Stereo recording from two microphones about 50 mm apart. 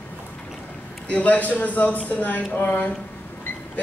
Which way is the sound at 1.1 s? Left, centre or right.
Left.